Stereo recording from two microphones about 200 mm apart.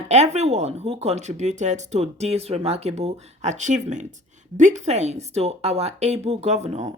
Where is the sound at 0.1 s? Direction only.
35° right (ahead or behind).